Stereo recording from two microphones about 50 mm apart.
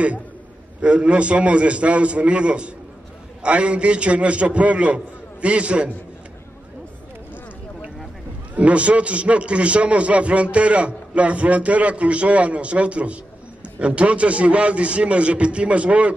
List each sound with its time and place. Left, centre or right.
0.7 s a man's voice: right
8.5 s a man's voice: right